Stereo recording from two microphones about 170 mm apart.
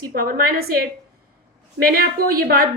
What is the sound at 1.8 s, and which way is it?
Speech, 60° right (ahead or behind).